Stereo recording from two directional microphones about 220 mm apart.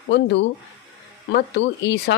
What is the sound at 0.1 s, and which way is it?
A woman's voice, 55° left (ahead or behind).